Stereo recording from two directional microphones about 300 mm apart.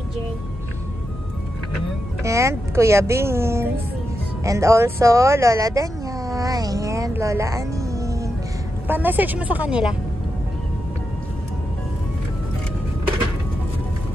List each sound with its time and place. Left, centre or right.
2.2 s speech: centre
4.5 s a sound: centre
8.8 s speech: centre